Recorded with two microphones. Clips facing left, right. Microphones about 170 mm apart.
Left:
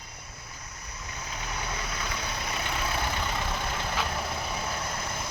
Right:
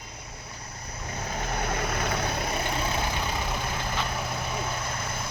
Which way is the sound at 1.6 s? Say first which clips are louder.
Right 6 dB; 55° right (ahead or behind).